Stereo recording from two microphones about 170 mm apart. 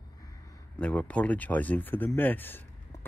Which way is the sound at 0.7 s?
10° left (ahead or behind).